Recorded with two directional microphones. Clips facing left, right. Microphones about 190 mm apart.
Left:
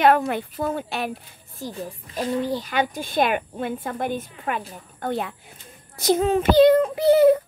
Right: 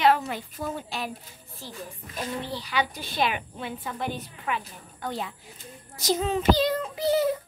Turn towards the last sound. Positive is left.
turn(degrees=60)  # may be behind; listen again after turning